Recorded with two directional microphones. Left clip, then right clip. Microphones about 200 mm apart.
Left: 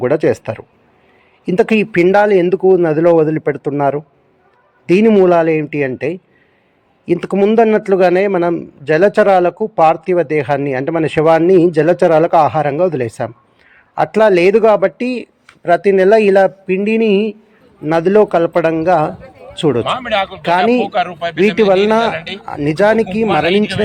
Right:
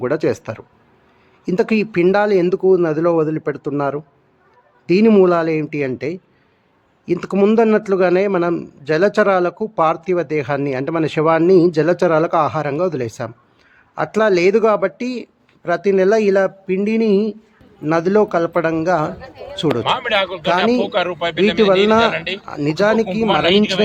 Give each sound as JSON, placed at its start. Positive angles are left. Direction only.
{"t": 0.0, "sound": "a man's voice", "side_deg": 0}
{"t": 1.5, "sound": "a man's voice", "side_deg": 0}
{"t": 19.8, "sound": "speech", "side_deg": -35}
{"t": 20.4, "sound": "a man's voice", "side_deg": 5}
{"t": 20.8, "sound": "speech", "side_deg": -30}
{"t": 21.8, "sound": "a man's voice", "side_deg": 0}
{"t": 22.1, "sound": "speech", "side_deg": -30}
{"t": 22.4, "sound": "a man's voice", "side_deg": 5}
{"t": 23.2, "sound": "speech", "side_deg": -20}